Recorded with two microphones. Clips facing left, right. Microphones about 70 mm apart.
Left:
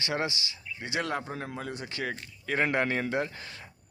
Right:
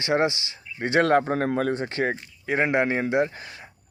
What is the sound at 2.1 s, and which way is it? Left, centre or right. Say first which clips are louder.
Speech: right 5 dB; centre.